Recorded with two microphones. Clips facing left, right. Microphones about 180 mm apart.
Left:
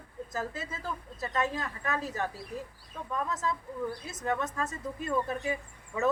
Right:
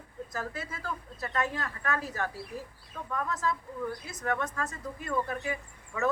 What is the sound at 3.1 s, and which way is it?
Speech, 20° left (ahead or behind).